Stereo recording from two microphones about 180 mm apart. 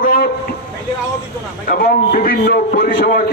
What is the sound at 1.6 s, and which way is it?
A man's voice, 55° left (ahead or behind).